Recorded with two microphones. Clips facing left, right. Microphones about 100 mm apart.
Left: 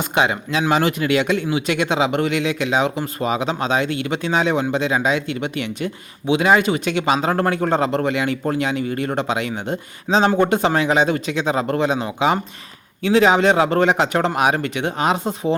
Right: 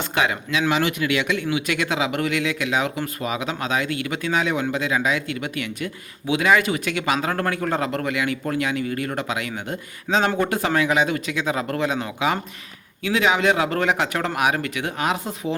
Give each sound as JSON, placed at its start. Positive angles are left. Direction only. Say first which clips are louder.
{"t": 0.0, "sound": "speech", "louder": "left 4 dB", "side_deg": 25}
{"t": 0.7, "sound": "speech", "louder": "left 5 dB", "side_deg": 35}
{"t": 13.0, "sound": "speech", "louder": "left 6 dB", "side_deg": 30}